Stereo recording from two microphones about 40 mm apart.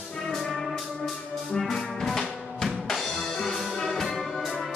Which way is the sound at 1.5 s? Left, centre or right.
Centre.